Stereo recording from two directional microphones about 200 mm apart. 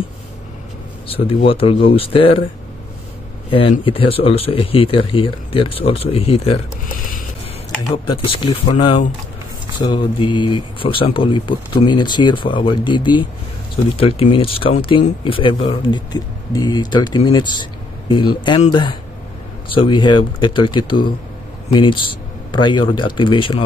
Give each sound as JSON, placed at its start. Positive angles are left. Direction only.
{"t": 1.0, "sound": "speech", "side_deg": 30}
{"t": 3.4, "sound": "speech", "side_deg": 25}
{"t": 7.9, "sound": "speech", "side_deg": 25}